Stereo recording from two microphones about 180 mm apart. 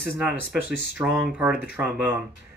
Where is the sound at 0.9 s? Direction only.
5° right (ahead or behind).